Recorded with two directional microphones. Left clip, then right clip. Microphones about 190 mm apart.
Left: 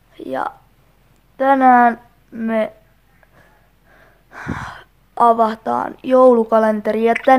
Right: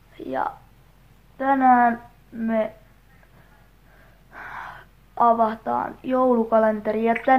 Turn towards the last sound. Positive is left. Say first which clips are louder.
# left 6 dB
turn(degrees=55)  # may be behind; listen again after turning